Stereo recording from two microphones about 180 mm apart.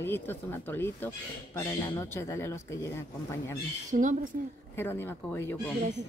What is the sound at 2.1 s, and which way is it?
Speech, 15° left (ahead or behind).